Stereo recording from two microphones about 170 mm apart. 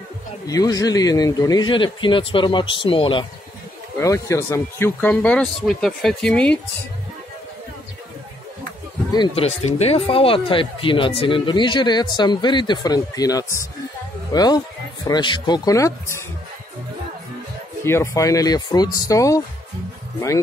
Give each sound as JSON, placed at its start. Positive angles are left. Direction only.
{"t": 0.5, "sound": "speech", "side_deg": 20}
{"t": 4.0, "sound": "speech", "side_deg": 20}
{"t": 9.3, "sound": "speech", "side_deg": 35}
{"t": 17.8, "sound": "speech", "side_deg": 15}